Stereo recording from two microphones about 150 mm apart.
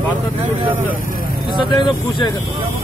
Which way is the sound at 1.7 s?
30° left (ahead or behind).